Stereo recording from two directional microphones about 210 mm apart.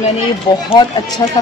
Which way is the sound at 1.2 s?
20° left (ahead or behind).